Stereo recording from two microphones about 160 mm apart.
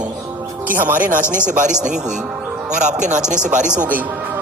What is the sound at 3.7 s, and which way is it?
Speech, 10° right (ahead or behind).